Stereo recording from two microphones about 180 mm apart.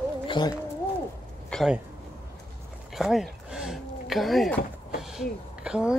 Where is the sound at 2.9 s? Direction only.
Centre (ahead or behind).